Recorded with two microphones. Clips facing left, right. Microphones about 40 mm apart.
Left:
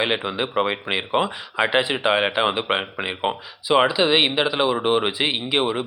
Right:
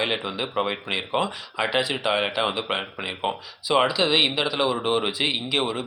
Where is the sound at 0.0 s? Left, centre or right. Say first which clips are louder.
Left 3 dB; centre.